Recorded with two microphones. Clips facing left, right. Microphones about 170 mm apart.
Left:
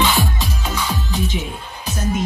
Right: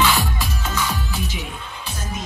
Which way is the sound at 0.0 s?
20° left (ahead or behind).